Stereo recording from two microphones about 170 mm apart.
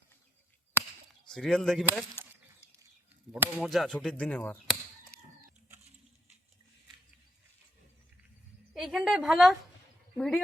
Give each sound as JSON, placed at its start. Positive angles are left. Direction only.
{"t": 1.3, "sound": "speech", "side_deg": 5}
{"t": 3.3, "sound": "speech", "side_deg": -10}
{"t": 3.6, "sound": "speech", "side_deg": 0}
{"t": 5.1, "sound": "a sound", "side_deg": 65}
{"t": 8.7, "sound": "a woman's voice", "side_deg": 0}